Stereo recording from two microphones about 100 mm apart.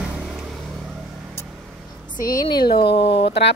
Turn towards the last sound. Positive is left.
turn(degrees=75)  # may be behind; listen again after turning